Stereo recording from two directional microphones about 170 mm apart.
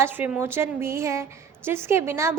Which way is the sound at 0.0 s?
10° right (ahead or behind).